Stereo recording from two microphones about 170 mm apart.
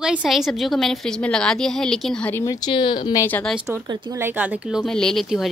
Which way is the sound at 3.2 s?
10° left (ahead or behind).